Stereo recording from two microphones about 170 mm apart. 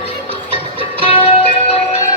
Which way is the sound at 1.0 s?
35° left (ahead or behind).